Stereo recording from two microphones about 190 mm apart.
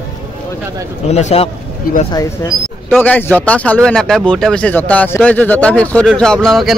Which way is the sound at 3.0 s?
10° left (ahead or behind).